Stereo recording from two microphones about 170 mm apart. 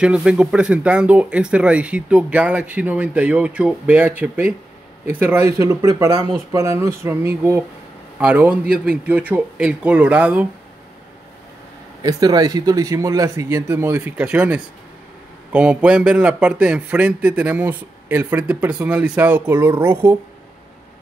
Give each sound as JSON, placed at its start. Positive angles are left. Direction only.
{"t": 0.0, "sound": "speech", "side_deg": -5}
{"t": 12.0, "sound": "speech", "side_deg": -20}